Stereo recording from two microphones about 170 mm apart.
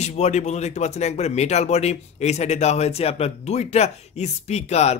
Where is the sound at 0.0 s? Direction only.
40° left (ahead or behind).